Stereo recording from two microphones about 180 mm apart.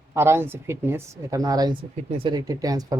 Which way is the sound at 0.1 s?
15° right (ahead or behind).